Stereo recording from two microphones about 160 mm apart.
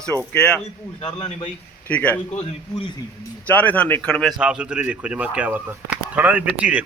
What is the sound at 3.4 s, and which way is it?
Speech, 10° left (ahead or behind).